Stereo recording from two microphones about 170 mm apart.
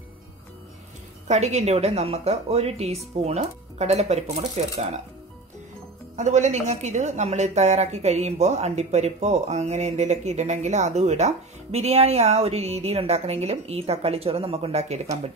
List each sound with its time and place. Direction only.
1.2 s a woman's voice: 40° right (ahead or behind)
6.1 s a woman's voice: 45° right (ahead or behind)